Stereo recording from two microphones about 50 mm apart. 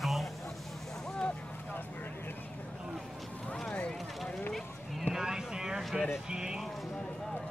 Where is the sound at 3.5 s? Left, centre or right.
Centre.